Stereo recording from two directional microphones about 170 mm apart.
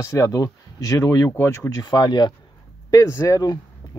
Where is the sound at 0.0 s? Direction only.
20° left (ahead or behind).